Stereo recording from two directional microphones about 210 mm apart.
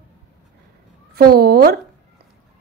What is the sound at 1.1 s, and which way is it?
Speech, 50° right (ahead or behind).